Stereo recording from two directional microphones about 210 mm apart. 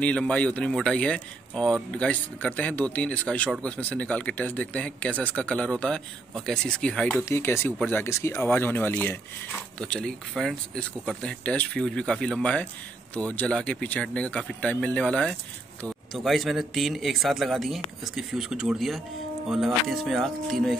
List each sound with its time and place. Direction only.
0.0 s speech: 5° left (ahead or behind)